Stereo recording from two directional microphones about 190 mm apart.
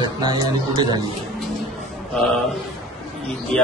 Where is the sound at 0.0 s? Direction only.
20° right (ahead or behind).